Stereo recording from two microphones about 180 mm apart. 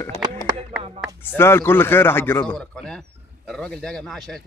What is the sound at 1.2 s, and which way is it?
A man's voice, 10° left (ahead or behind).